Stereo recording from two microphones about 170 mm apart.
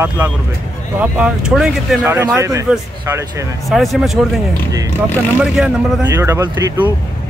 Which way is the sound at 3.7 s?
Centre (ahead or behind).